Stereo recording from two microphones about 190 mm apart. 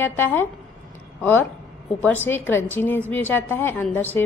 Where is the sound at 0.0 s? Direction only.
10° left (ahead or behind).